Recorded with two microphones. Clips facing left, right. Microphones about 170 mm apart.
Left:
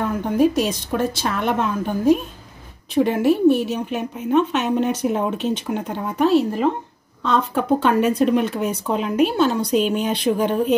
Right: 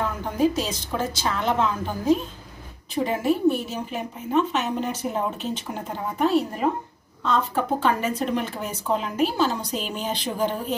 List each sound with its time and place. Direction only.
0.4 s a woman's voice: 60° left (ahead or behind); by 6.6 s 85° left
7.2 s a woman's voice: 70° left (ahead or behind)